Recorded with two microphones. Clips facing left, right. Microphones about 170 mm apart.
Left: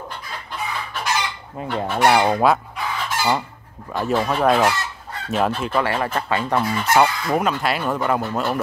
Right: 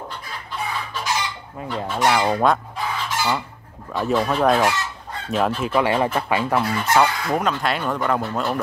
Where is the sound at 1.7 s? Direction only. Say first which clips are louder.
Left 3 dB; 60° left (ahead or behind).